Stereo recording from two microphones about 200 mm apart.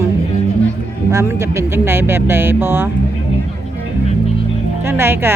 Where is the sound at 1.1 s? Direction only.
15° right (ahead or behind).